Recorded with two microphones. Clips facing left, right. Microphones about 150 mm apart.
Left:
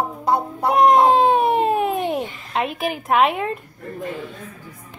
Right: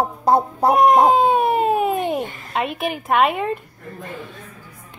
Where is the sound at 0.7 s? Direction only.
Centre (ahead or behind).